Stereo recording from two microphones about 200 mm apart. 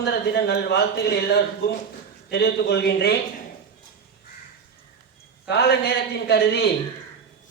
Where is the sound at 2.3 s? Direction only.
55° left (ahead or behind).